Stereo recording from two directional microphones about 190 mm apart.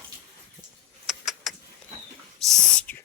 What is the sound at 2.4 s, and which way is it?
Whispering, centre (ahead or behind).